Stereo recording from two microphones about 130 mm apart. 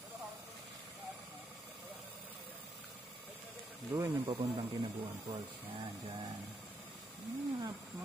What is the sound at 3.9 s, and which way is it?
Speech, 10° right (ahead or behind).